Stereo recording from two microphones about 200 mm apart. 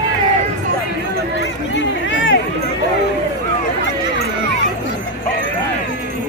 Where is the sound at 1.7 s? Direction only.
70° left (ahead or behind).